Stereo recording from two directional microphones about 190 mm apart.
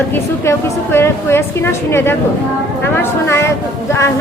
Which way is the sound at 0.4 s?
15° left (ahead or behind).